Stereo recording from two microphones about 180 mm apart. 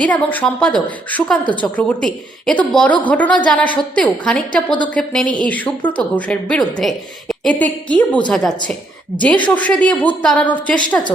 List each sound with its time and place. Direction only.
0.0 s a woman's voice: 10° left (ahead or behind)